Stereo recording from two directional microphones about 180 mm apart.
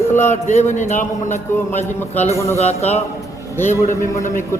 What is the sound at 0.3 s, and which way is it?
A man's voice, 40° left (ahead or behind).